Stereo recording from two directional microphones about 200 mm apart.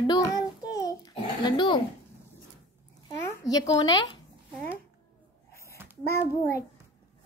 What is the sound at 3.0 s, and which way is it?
A child's voice, 20° left (ahead or behind).